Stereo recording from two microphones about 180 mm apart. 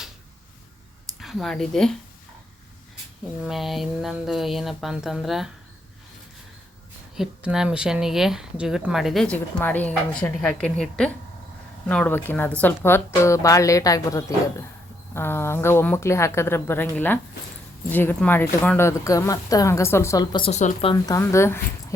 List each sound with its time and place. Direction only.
1.2 s speech: centre (ahead or behind)
3.4 s speech: centre (ahead or behind)
7.2 s speech: 5° right (ahead or behind); by 20.5 s 25° left (ahead or behind)
20.5 s speech: 40° left (ahead or behind)
20.9 s speech: 15° left (ahead or behind)